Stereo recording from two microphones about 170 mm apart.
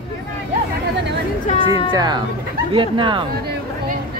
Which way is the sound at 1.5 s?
45° left (ahead or behind).